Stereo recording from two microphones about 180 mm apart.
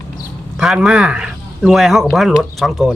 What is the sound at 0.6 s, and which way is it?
Speech, 5° right (ahead or behind).